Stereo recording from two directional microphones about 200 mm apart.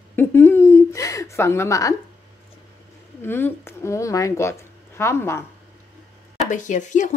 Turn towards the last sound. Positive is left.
turn(degrees=40)  # may be behind; listen again after turning